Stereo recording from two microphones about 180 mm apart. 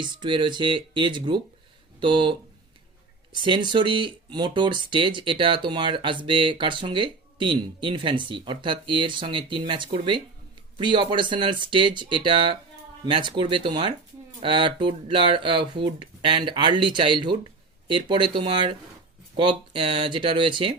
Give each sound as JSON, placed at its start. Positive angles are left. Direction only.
{"t": 0.0, "sound": "speech", "side_deg": -25}
{"t": 3.3, "sound": "speech", "side_deg": -25}